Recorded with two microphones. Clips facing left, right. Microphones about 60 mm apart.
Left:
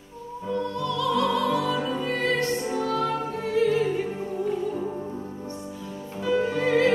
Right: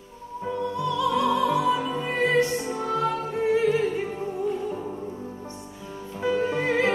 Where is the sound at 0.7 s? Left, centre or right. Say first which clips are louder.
Right 2 dB; centre.